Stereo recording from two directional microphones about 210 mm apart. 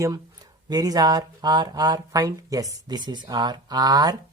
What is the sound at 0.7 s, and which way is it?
Speech, 20° right (ahead or behind).